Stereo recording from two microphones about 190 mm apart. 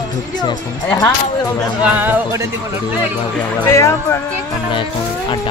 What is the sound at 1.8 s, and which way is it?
Speech, 10° right (ahead or behind).